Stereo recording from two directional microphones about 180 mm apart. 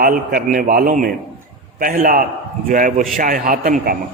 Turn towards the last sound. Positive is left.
turn(degrees=-50)  # may be behind; listen again after turning